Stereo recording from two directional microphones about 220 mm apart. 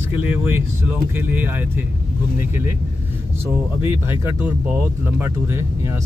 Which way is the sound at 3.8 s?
10° right (ahead or behind).